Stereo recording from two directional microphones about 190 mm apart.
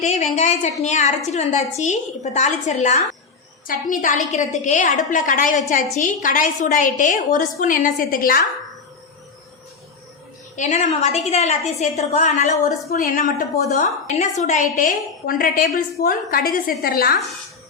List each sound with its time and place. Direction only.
0.0 s a woman's voice: 35° left (ahead or behind)
10.5 s a woman's voice: 40° left (ahead or behind)